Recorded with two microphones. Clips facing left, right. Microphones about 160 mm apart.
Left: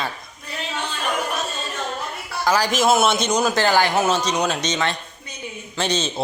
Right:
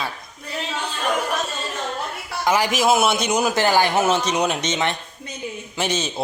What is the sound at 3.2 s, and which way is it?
Speech, centre (ahead or behind).